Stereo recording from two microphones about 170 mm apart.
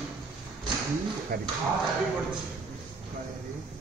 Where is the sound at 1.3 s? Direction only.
60° right (ahead or behind).